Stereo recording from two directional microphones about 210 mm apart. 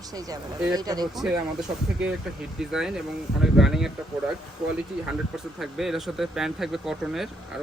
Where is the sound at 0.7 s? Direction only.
20° right (ahead or behind).